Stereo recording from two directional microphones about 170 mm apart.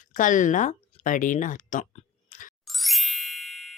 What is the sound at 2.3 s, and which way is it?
Music, 50° left (ahead or behind).